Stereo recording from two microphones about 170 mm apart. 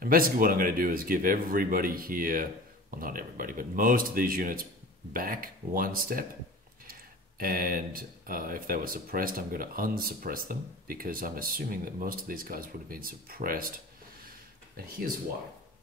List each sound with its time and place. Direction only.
0.0 s speech: 60° right (ahead or behind)